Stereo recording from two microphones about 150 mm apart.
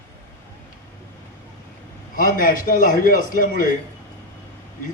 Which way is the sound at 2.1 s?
65° left (ahead or behind).